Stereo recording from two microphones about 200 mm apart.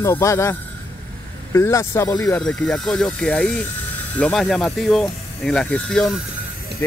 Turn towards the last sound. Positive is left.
turn(degrees=10)  # may be behind; listen again after turning